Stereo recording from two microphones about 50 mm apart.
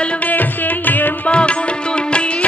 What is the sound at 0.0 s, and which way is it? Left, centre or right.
Music, left.